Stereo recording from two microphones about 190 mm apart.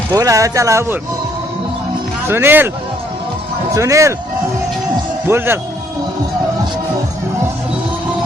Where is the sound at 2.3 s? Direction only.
10° right (ahead or behind).